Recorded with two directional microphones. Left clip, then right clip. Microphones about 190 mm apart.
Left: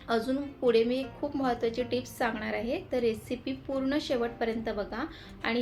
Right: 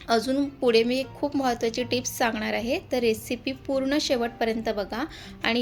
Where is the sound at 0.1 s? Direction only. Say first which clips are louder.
Right 6 dB; 50° right (ahead or behind).